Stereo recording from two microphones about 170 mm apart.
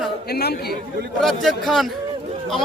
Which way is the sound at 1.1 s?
Centre (ahead or behind).